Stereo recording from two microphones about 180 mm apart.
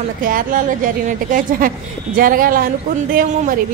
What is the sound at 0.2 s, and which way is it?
Speech, 50° right (ahead or behind).